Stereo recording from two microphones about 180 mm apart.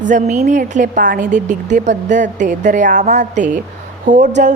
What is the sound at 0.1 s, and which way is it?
A woman's voice, 40° right (ahead or behind).